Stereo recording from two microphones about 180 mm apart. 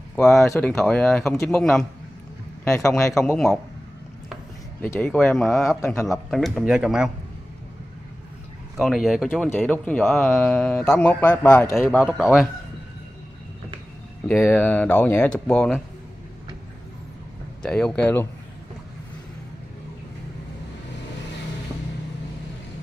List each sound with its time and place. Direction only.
0.1 s speech: 5° left (ahead or behind)
3.2 s speech: 5° left (ahead or behind)
4.8 s speech: 10° left (ahead or behind)
8.7 s speech: centre (ahead or behind)
14.2 s speech: 10° left (ahead or behind)
17.6 s speech: 5° left (ahead or behind)